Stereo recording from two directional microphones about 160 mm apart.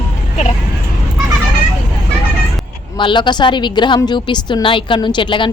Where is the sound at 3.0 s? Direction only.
30° left (ahead or behind).